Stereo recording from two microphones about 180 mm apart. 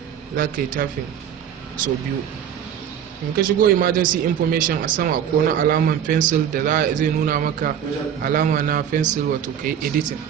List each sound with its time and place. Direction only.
0.3 s a man's voice: 50° right (ahead or behind)
3.3 s a man's voice: 55° right (ahead or behind)